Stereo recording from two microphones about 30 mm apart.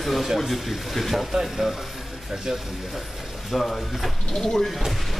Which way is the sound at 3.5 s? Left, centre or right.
Centre.